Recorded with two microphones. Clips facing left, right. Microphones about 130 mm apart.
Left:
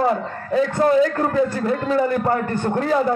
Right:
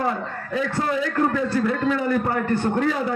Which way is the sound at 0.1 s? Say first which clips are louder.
Left 6 dB; 40° left (ahead or behind).